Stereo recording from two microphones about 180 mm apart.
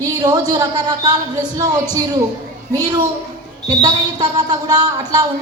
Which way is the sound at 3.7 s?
20° right (ahead or behind).